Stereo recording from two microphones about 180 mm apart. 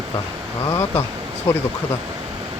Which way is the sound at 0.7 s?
15° left (ahead or behind).